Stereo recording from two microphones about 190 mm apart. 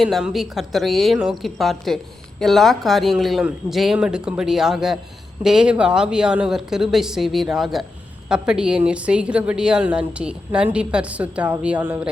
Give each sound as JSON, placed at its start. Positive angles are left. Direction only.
{"t": 0.0, "sound": "a woman's voice", "side_deg": 0}